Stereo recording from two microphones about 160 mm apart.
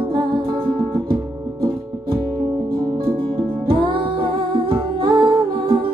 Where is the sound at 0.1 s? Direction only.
30° right (ahead or behind).